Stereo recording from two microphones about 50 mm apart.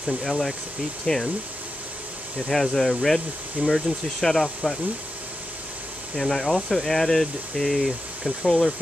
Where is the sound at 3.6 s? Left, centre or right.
Right.